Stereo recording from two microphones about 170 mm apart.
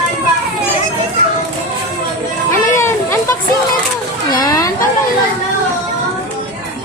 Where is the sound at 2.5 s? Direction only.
15° left (ahead or behind).